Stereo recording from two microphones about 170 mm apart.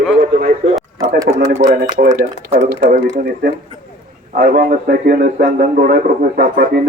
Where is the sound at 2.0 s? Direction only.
50° right (ahead or behind).